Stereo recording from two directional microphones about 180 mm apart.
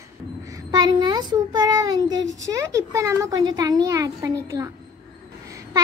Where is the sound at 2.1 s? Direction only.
90° right.